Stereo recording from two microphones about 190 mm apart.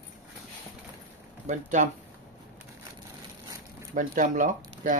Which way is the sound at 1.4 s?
40° right (ahead or behind).